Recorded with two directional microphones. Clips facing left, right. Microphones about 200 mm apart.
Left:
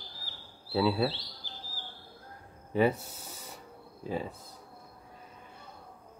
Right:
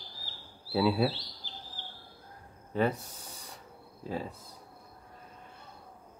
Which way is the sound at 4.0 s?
Centre (ahead or behind).